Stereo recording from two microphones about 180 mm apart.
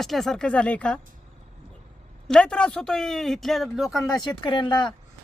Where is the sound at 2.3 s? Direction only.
5° left (ahead or behind).